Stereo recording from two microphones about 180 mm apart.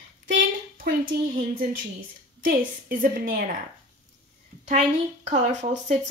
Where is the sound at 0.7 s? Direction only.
50° right (ahead or behind).